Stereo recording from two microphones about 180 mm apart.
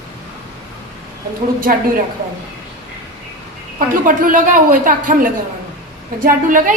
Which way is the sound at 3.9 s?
50° right (ahead or behind).